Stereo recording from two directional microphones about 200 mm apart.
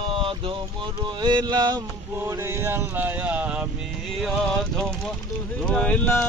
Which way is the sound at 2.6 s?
10° right (ahead or behind).